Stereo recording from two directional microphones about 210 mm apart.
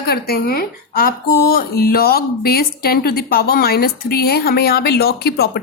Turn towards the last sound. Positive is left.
turn(degrees=50)  # may be behind; listen again after turning